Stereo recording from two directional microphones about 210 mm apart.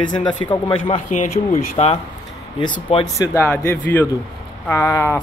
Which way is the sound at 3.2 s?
10° left (ahead or behind).